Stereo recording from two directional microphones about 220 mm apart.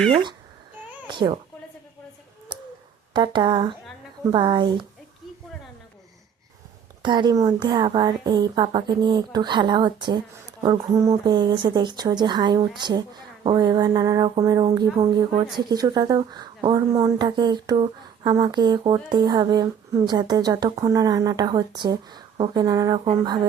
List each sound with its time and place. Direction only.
0.1 s speech: 20° right (ahead or behind)
3.1 s speech: 20° right (ahead or behind)
7.0 s a woman's voice: 20° right (ahead or behind)